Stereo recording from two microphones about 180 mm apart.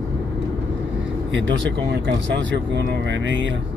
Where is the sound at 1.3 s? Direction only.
85° right.